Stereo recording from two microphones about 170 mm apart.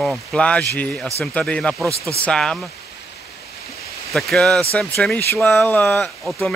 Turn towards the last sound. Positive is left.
turn(degrees=5)  # may be behind; listen again after turning